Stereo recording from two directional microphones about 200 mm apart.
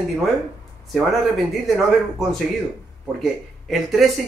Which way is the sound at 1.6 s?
Centre (ahead or behind).